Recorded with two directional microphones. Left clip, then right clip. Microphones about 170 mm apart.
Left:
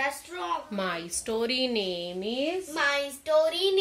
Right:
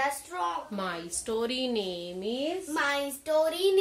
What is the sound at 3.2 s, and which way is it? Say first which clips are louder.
Speech: left 2 dB; 25° right (ahead or behind).